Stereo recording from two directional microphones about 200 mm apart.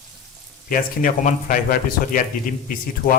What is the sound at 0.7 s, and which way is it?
Speech, 40° left (ahead or behind).